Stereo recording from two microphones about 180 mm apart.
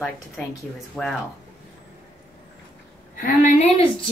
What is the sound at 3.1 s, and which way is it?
Speech, 50° left (ahead or behind).